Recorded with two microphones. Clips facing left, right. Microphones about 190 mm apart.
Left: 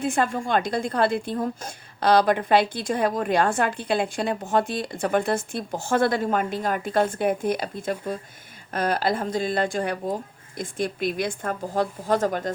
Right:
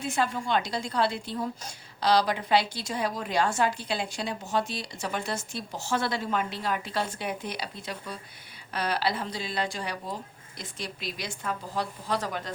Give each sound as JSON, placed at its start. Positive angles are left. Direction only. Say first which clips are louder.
{"t": 0.0, "sound": "a woman's voice", "louder": "left 5 dB", "side_deg": 50}